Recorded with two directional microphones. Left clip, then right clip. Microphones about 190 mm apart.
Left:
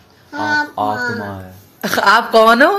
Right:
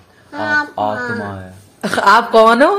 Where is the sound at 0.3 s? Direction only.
15° right (ahead or behind).